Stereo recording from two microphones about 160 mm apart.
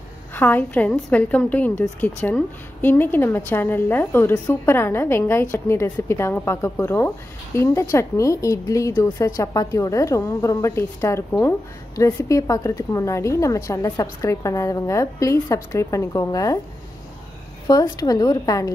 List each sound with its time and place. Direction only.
0.3 s a woman's voice: 10° left (ahead or behind)
17.6 s speech: 25° left (ahead or behind)